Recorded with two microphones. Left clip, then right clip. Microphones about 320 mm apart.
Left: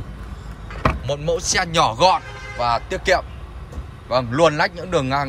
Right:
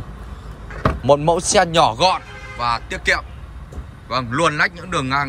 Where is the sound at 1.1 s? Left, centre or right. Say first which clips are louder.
Right 7 dB; centre.